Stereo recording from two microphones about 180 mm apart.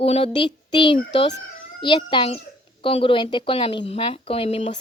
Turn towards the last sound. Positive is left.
turn(degrees=30)  # may be behind; listen again after turning